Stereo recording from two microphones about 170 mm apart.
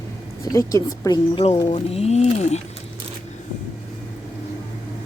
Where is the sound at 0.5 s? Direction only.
20° left (ahead or behind); by 2.6 s 40° left (ahead or behind).